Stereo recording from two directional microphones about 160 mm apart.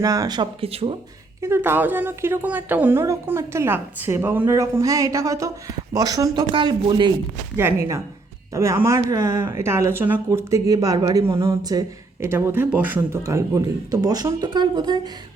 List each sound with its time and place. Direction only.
0.0 s speech: 20° right (ahead or behind); by 0.9 s 35° right (ahead or behind)
1.4 s a woman's voice: 15° right (ahead or behind)
7.5 s a woman's voice: 15° right (ahead or behind)